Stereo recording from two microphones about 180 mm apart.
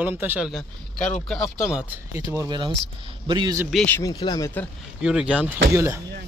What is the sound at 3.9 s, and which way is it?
Speech, 20° left (ahead or behind).